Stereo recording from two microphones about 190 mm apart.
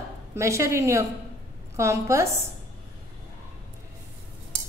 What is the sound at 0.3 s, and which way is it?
A woman's voice, 15° right (ahead or behind).